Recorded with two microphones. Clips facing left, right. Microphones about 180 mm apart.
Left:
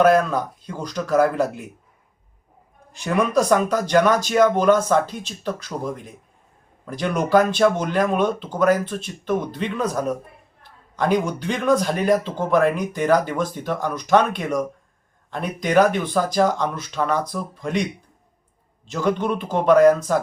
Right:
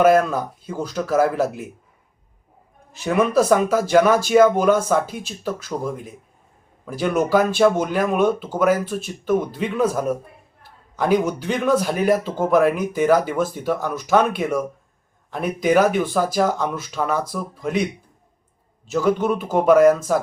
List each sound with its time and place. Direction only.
0.0 s a man's voice: 10° right (ahead or behind)
2.9 s a man's voice: 5° right (ahead or behind)
18.9 s a man's voice: 5° right (ahead or behind)